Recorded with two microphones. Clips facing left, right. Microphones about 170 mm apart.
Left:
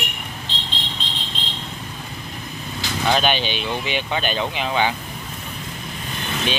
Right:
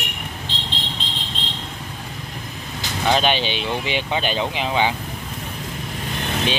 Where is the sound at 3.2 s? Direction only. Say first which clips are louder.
Right 1 dB; 25° right (ahead or behind).